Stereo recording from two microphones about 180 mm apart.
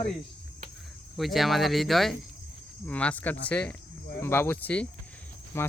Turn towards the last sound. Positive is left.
turn(degrees=15)  # may be behind; listen again after turning